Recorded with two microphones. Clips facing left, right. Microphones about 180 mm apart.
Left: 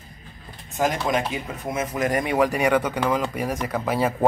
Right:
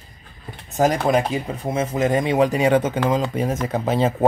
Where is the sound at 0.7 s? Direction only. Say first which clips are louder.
Right 5 dB; 40° right (ahead or behind).